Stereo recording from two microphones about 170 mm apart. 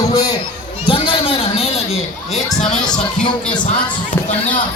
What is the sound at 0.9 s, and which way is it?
A man's voice, 30° left (ahead or behind).